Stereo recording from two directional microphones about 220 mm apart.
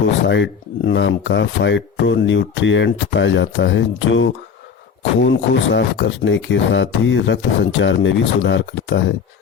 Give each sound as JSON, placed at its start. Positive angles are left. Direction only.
{"t": 0.3, "sound": "speech", "side_deg": 55}